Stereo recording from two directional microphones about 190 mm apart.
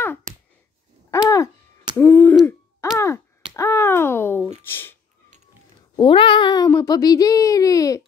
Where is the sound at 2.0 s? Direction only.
10° left (ahead or behind).